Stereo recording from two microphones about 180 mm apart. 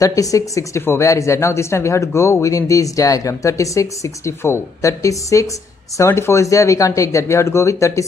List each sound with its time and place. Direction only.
0.0 s speech: 20° left (ahead or behind)